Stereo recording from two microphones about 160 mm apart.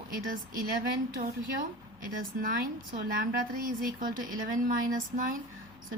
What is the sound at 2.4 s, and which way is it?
Speech, 65° right (ahead or behind).